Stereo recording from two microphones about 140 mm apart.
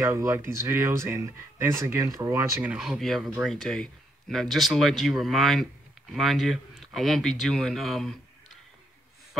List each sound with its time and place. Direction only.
0.0 s speech: 20° right (ahead or behind)
2.7 s speech: 5° right (ahead or behind)